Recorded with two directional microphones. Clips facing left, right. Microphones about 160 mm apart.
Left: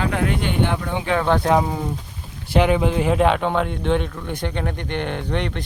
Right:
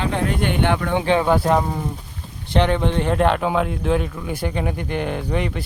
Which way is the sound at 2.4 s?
5° left (ahead or behind).